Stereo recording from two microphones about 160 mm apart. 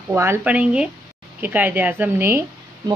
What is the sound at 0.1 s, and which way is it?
A woman's voice, 15° right (ahead or behind).